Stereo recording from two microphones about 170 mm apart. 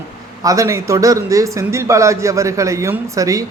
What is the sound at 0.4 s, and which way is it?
Speech, 20° right (ahead or behind).